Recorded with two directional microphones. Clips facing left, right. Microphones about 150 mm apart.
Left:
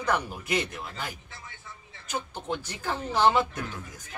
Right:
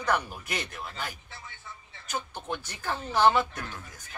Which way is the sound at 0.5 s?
10° left (ahead or behind).